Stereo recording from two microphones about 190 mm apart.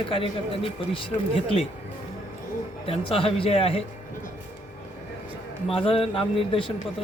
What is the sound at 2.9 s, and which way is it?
Speech, 30° left (ahead or behind).